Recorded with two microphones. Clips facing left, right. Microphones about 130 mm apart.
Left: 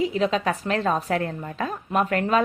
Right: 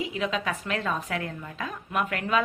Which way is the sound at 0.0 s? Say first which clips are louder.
Left 7 dB; 35° left (ahead or behind).